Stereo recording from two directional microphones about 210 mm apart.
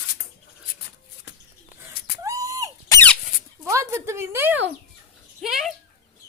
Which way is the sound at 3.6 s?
15° right (ahead or behind).